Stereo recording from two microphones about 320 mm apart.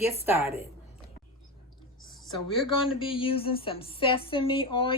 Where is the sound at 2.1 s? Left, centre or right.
Centre.